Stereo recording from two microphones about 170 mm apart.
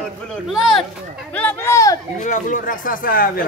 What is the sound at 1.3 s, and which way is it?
Speech, 10° left (ahead or behind).